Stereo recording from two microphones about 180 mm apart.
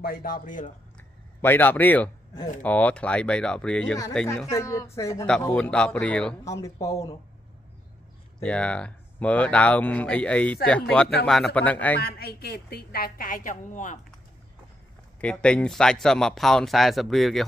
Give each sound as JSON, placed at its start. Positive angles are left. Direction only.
{"t": 0.0, "sound": "a man's voice", "side_deg": 55}
{"t": 0.9, "sound": "a sound", "side_deg": 10}
{"t": 2.6, "sound": "speech", "side_deg": 10}
{"t": 4.5, "sound": "speech", "side_deg": 15}
{"t": 6.4, "sound": "speech", "side_deg": 20}
{"t": 8.4, "sound": "speech", "side_deg": 5}
{"t": 12.0, "sound": "a woman's voice", "side_deg": 60}
{"t": 15.1, "sound": "speech", "side_deg": 5}